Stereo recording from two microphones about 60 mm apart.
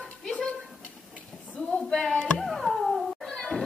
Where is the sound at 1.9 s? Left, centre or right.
Centre.